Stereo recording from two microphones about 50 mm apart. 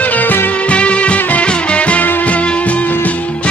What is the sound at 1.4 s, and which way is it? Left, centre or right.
Music, left.